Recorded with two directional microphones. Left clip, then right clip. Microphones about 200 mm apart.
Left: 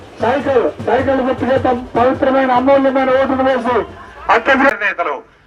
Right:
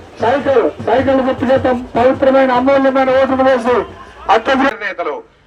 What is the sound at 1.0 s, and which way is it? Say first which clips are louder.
Speech: right 2 dB; 55° right (ahead or behind).